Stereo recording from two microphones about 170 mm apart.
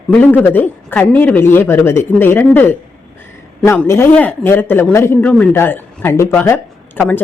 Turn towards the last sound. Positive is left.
turn(degrees=10)  # may be behind; listen again after turning